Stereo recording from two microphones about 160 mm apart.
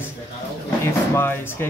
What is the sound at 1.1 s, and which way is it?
Speech, 15° left (ahead or behind).